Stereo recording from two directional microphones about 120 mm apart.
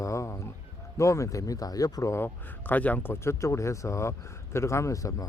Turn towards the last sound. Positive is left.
turn(degrees=25)  # may be behind; listen again after turning